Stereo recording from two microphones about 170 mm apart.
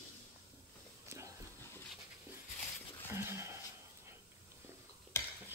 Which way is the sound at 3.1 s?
15° right (ahead or behind).